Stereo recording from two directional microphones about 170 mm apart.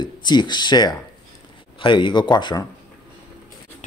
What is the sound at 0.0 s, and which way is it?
Speech, 25° left (ahead or behind).